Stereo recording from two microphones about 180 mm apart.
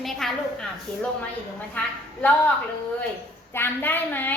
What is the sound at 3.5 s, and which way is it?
Speech, 10° left (ahead or behind).